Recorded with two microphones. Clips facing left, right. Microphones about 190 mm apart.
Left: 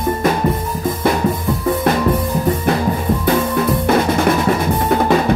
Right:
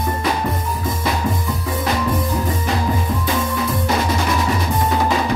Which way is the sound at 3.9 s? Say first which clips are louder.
Left 6 dB; 55° left (ahead or behind).